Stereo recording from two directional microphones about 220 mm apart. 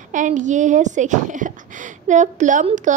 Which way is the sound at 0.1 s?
35° right (ahead or behind).